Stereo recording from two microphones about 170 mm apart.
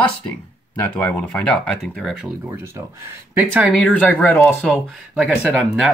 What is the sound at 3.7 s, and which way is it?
Speech, 5° left (ahead or behind).